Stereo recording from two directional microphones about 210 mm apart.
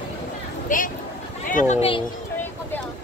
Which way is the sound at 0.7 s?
40° left (ahead or behind).